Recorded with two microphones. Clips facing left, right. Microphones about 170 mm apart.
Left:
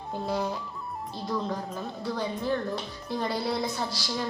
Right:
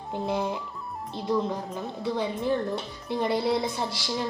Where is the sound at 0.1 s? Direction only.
20° right (ahead or behind).